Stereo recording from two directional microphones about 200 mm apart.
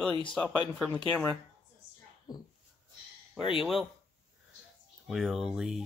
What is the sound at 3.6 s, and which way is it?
Speech, centre (ahead or behind).